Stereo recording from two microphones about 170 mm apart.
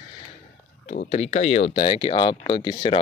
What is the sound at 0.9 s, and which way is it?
Speech, 40° left (ahead or behind).